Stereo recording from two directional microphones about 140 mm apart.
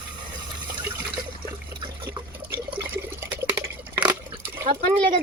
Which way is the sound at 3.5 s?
30° right (ahead or behind).